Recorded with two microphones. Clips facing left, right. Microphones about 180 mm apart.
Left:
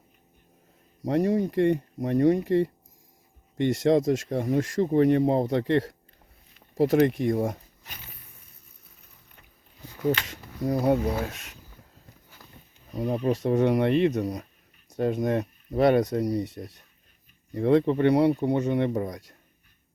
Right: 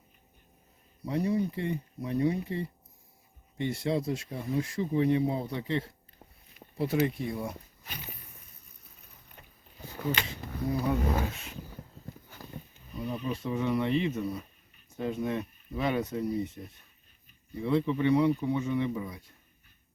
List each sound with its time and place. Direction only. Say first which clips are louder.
1.0 s speech: left 5 dB; 90° left
10.1 s speech: left 7 dB; 60° left (ahead or behind)
10.7 s speech: left 7 dB; 40° left (ahead or behind)
10.9 s speech: left 4 dB; 75° left (ahead or behind)
12.9 s speech: left 8 dB; 40° left (ahead or behind)
13.3 s speech: left 7 dB; 80° left
15.2 s speech: left 6 dB; 45° left (ahead or behind)
15.9 s speech: left 5 dB; 75° left (ahead or behind)
17.8 s speech: left 6 dB; 55° left (ahead or behind)
18.1 s speech: left 2 dB; 80° left
19.1 s speech: left 7 dB; 90° left